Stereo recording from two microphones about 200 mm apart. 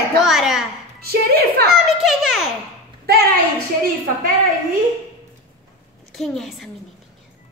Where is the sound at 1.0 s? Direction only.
50° right (ahead or behind).